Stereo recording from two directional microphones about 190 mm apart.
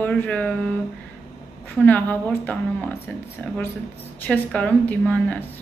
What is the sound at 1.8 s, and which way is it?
A woman's voice, 10° left (ahead or behind).